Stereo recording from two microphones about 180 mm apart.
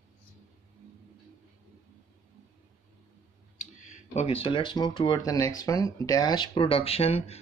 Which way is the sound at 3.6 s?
45° left (ahead or behind).